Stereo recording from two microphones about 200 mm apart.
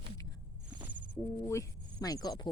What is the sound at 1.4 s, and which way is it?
Speech, 15° left (ahead or behind).